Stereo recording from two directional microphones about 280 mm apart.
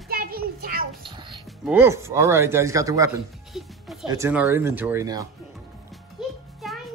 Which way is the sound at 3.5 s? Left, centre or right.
Centre.